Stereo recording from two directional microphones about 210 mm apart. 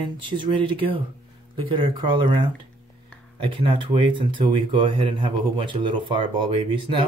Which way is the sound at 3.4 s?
25° right (ahead or behind).